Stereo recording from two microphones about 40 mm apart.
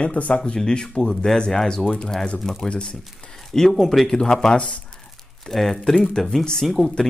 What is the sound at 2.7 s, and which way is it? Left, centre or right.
Speech, left.